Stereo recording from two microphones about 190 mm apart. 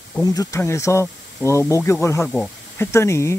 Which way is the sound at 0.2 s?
20° left (ahead or behind).